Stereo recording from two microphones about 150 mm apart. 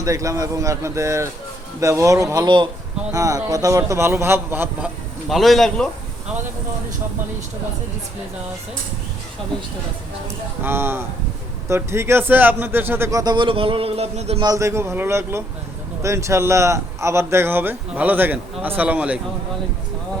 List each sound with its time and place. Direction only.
0.0 s speech: 20° right (ahead or behind)
5.3 s a man's voice: centre (ahead or behind)
10.6 s speech: 15° right (ahead or behind); by 14.4 s 45° right (ahead or behind)
14.4 s speech: 20° right (ahead or behind)